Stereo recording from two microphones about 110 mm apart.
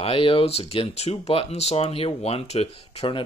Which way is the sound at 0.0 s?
55° left (ahead or behind).